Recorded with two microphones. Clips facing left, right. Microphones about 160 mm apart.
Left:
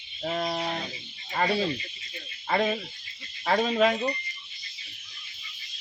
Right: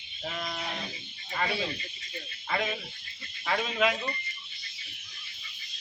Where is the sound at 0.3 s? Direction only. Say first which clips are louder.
Left 7 dB; 40° left (ahead or behind).